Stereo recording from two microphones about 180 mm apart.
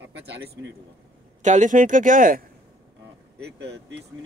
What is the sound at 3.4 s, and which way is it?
Speech, 70° right (ahead or behind).